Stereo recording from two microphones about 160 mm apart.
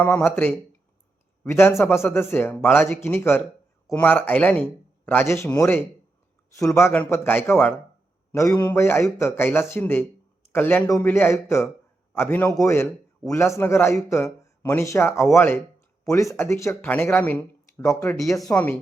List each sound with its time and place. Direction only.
0.0 s a man's voice: 10° left (ahead or behind)
18.2 s speech: centre (ahead or behind)
18.5 s speech: 15° left (ahead or behind)